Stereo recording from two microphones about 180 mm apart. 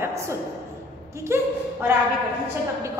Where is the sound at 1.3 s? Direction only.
15° right (ahead or behind).